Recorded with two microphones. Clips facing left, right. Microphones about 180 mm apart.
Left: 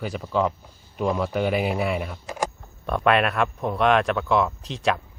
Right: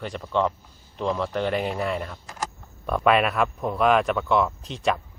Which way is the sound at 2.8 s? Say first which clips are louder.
Even; centre (ahead or behind).